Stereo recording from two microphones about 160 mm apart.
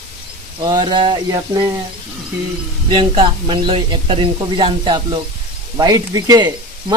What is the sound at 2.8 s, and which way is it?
Speech, 35° right (ahead or behind).